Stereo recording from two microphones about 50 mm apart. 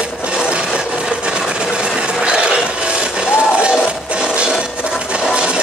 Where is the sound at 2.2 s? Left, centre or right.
Right.